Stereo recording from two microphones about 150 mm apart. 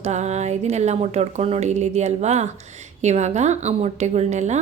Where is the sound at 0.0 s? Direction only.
50° right (ahead or behind).